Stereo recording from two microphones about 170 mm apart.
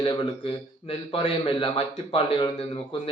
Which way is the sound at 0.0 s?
30° left (ahead or behind).